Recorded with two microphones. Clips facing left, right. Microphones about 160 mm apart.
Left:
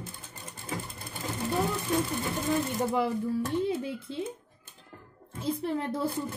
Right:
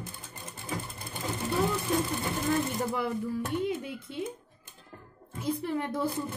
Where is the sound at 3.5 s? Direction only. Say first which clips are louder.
Left 2 dB; 30° left (ahead or behind).